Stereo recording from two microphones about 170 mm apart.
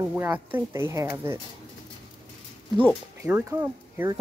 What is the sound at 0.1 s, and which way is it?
Speech, 10° right (ahead or behind).